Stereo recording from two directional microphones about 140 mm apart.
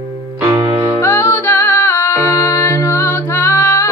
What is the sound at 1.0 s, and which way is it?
Music, 20° left (ahead or behind).